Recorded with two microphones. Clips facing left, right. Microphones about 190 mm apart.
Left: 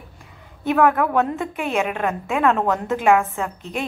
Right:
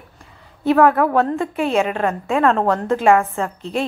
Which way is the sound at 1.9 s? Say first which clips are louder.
Right 3 dB; 5° left (ahead or behind).